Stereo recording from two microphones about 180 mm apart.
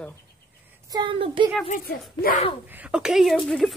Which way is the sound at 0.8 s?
25° right (ahead or behind).